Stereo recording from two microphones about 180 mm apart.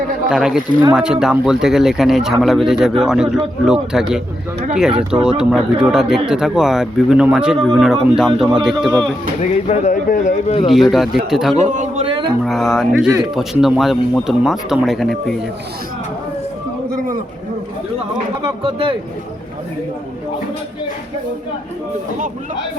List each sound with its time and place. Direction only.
0.3 s speech: 5° right (ahead or behind)
9.4 s speech: 40° left (ahead or behind)
10.7 s speech: centre (ahead or behind)
11.6 s a man's voice: 40° right (ahead or behind)
12.0 s a man's voice: 30° right (ahead or behind)
12.5 s speech: centre (ahead or behind)
18.4 s a man's voice: 30° right (ahead or behind)